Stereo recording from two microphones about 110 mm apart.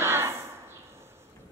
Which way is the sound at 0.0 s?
20° right (ahead or behind).